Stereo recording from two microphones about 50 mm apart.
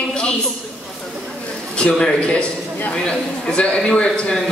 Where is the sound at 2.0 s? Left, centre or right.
Centre.